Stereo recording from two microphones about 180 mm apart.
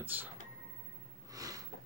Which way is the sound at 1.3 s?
20° right (ahead or behind).